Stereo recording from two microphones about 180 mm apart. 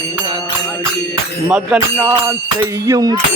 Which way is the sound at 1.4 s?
5° right (ahead or behind).